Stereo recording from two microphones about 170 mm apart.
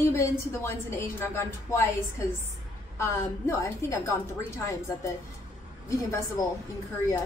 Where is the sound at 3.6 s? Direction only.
15° left (ahead or behind).